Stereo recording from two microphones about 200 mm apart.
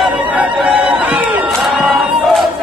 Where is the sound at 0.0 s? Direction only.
5° right (ahead or behind).